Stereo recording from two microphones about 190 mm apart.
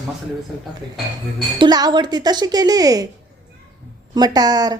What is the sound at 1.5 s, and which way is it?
A woman's voice, 20° right (ahead or behind).